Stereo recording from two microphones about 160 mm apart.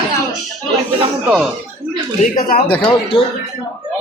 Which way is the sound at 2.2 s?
65° left (ahead or behind).